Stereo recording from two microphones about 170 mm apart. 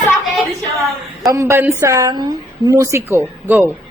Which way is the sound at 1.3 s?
15° right (ahead or behind).